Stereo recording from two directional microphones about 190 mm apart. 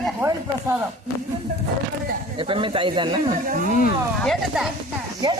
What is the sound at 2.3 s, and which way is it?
Speech, 25° right (ahead or behind).